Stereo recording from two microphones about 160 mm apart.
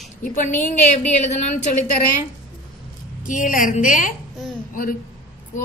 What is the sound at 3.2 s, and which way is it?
Speech, 55° left (ahead or behind).